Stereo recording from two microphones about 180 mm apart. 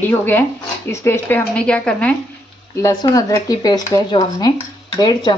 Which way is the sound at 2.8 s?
20° left (ahead or behind).